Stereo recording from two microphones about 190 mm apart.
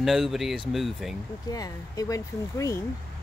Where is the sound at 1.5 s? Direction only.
20° left (ahead or behind).